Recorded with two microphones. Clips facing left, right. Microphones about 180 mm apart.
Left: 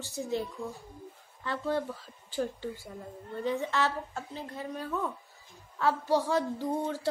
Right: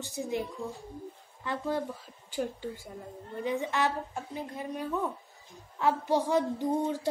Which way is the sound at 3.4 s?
15° right (ahead or behind).